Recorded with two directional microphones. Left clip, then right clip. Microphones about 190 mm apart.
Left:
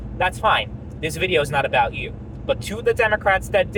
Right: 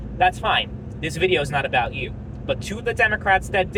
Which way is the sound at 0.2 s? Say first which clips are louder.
Even; 30° left (ahead or behind).